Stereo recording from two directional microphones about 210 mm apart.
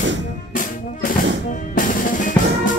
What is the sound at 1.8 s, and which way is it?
Music, 40° left (ahead or behind).